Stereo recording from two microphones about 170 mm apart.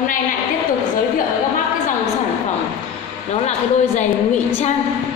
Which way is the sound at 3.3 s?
40° left (ahead or behind).